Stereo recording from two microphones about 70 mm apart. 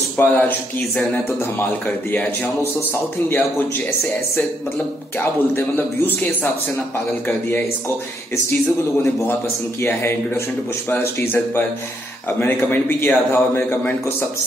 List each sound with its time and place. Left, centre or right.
0.2 s speech: left
2.1 s a man's voice: left
5.8 s speech: left
9.8 s a man's voice: left